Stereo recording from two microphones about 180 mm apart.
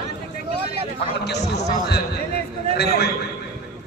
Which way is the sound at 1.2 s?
70° left (ahead or behind).